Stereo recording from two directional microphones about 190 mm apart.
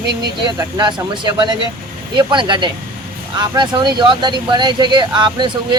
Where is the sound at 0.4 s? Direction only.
25° right (ahead or behind).